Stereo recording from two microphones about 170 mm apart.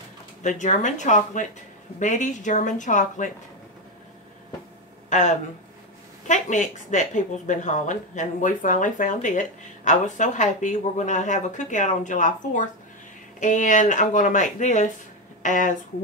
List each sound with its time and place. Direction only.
0.4 s speech: 45° left (ahead or behind)
5.1 s speech: 45° left (ahead or behind)